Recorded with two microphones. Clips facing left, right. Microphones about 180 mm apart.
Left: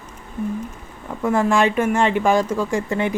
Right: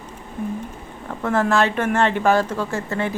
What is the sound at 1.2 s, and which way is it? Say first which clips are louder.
Speech: left 1 dB; 10° left (ahead or behind).